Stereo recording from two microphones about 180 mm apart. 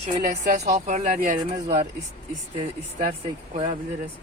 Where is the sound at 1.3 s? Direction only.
35° right (ahead or behind).